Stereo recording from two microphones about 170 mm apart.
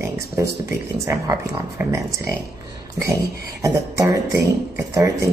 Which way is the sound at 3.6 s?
20° right (ahead or behind).